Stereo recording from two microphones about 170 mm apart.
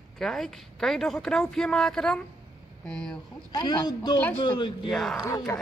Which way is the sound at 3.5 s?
25° left (ahead or behind).